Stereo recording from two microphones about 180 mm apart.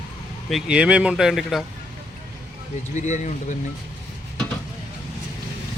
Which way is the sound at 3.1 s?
40° left (ahead or behind).